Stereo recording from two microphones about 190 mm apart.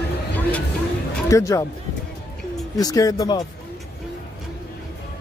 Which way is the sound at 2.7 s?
20° left (ahead or behind).